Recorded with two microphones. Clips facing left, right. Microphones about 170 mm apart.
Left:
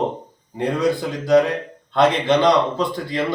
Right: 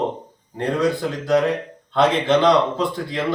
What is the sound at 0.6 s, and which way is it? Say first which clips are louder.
Speech: even; centre (ahead or behind).